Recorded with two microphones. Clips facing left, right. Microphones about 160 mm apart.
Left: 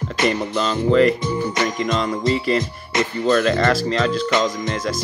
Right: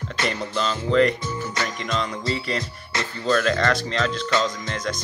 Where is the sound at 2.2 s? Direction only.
5° left (ahead or behind).